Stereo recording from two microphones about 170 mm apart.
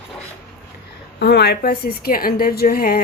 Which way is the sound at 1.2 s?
75° left (ahead or behind).